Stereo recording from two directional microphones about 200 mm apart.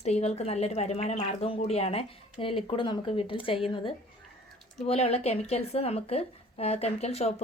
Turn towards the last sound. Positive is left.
turn(degrees=30)  # may be behind; listen again after turning